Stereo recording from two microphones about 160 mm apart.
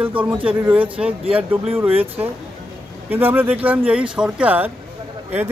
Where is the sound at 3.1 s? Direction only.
10° right (ahead or behind).